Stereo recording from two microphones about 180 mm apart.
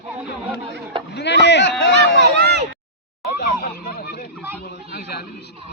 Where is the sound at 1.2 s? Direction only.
75° left (ahead or behind).